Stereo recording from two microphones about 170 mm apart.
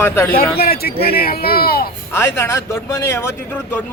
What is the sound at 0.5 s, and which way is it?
Speech, 65° left (ahead or behind).